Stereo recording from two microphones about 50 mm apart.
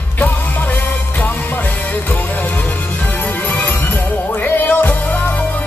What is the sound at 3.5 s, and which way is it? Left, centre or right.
Music, left.